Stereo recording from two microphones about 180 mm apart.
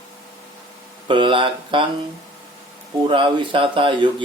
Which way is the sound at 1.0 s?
25° right (ahead or behind).